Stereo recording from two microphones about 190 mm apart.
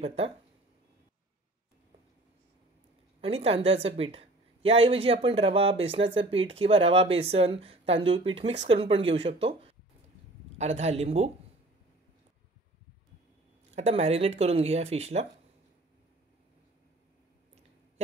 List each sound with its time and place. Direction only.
0.0 s a woman's voice: 30° right (ahead or behind)
3.2 s a woman's voice: 30° right (ahead or behind)
13.7 s a woman's voice: 35° right (ahead or behind)